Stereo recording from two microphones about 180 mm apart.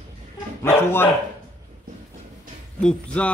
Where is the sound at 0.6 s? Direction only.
15° left (ahead or behind).